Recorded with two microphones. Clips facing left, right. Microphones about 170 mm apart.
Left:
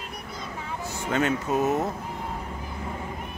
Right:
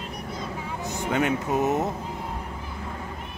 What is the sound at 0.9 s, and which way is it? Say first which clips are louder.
Speech: right 1 dB; 15° right (ahead or behind).